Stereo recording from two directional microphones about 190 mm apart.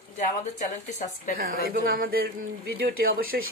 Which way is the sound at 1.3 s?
50° right (ahead or behind).